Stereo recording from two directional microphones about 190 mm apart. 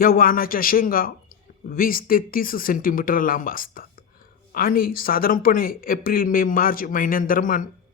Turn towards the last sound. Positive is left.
turn(degrees=45)  # may be behind; listen again after turning